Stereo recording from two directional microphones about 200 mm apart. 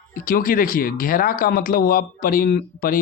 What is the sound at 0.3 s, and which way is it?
Speech, 45° left (ahead or behind).